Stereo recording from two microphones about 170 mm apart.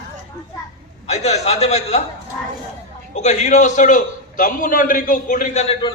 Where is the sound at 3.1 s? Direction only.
45° left (ahead or behind).